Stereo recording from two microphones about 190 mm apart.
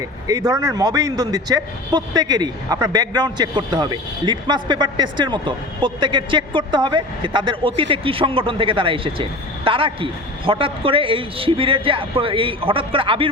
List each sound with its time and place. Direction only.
0.3 s a man's voice: 20° right (ahead or behind)